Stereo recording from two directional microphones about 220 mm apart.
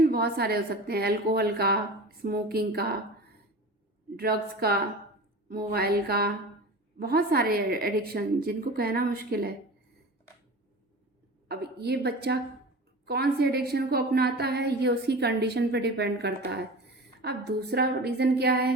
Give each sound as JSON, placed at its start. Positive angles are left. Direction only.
{"t": 0.0, "sound": "a woman's voice", "side_deg": -45}
{"t": 4.2, "sound": "a woman's voice", "side_deg": -45}
{"t": 11.4, "sound": "a woman's voice", "side_deg": -45}